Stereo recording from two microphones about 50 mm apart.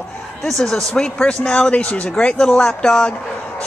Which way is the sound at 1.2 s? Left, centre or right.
Centre.